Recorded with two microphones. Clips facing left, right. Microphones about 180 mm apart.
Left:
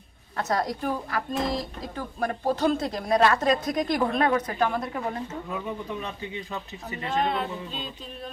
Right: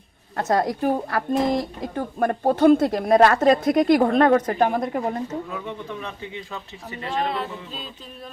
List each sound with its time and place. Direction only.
0.3 s a woman's voice: 50° right (ahead or behind)
3.7 s a woman's voice: 70° right (ahead or behind)
4.0 s a woman's voice: 45° right (ahead or behind)
5.5 s speech: 10° left (ahead or behind)
7.1 s a capella: centre (ahead or behind)